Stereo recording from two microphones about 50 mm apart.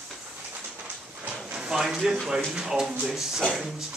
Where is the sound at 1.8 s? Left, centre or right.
Centre.